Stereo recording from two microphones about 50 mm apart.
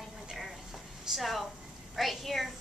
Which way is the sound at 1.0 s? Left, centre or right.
Centre.